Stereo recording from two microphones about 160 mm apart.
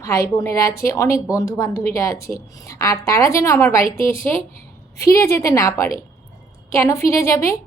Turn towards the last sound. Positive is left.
turn(degrees=15)  # may be behind; listen again after turning